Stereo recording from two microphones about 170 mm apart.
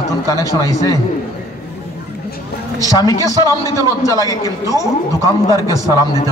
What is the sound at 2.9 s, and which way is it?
A man's voice, 20° left (ahead or behind).